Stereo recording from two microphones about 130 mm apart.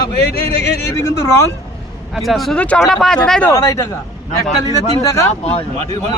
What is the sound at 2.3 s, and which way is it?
Speech, centre (ahead or behind).